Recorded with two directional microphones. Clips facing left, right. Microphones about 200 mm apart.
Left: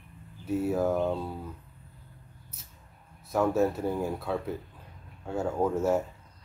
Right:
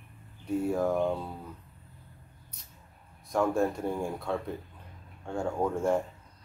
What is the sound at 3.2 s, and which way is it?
Speech, 5° left (ahead or behind).